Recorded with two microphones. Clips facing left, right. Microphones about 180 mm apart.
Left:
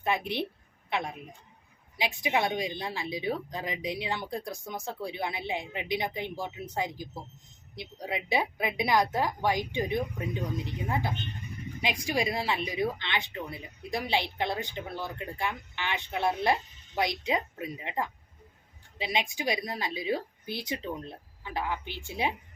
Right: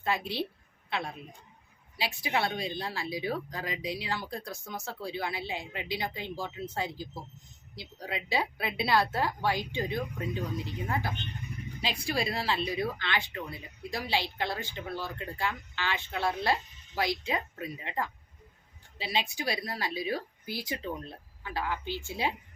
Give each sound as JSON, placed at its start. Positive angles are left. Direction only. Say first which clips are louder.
{"t": 0.0, "sound": "a woman's voice", "louder": "left 2 dB", "side_deg": 20}